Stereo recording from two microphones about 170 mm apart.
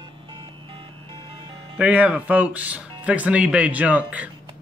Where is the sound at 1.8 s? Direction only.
5° right (ahead or behind).